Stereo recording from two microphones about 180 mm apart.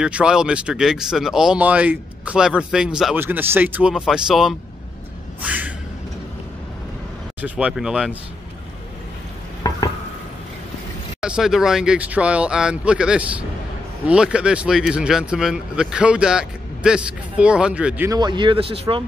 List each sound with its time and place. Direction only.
0.0 s speech: 5° right (ahead or behind)
5.4 s a sound: 10° right (ahead or behind)
7.4 s speech: 5° right (ahead or behind)
9.6 s a sound: 25° left (ahead or behind)
11.1 s speech: 5° right (ahead or behind)
18.2 s speech: 25° right (ahead or behind)